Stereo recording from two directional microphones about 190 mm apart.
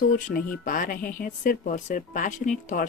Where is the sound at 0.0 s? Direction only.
45° left (ahead or behind).